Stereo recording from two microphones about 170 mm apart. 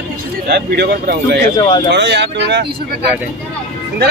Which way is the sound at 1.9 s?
90° right.